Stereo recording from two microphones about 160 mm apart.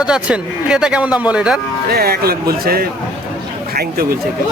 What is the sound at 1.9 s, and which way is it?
A man's voice, 75° right (ahead or behind).